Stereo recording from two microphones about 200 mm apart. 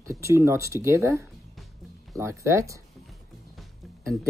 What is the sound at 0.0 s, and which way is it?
Speech, 15° right (ahead or behind).